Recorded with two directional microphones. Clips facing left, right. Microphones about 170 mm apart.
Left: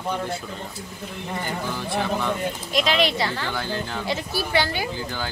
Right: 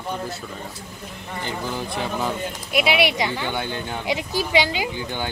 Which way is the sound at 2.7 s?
10° right (ahead or behind).